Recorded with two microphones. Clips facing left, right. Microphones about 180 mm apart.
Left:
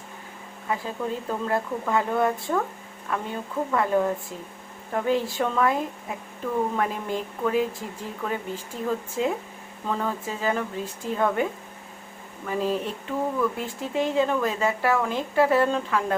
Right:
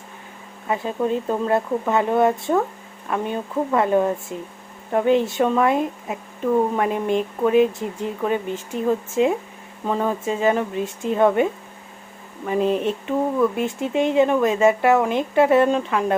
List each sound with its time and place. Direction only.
0.7 s speech: 20° right (ahead or behind)
12.5 s speech: 20° right (ahead or behind)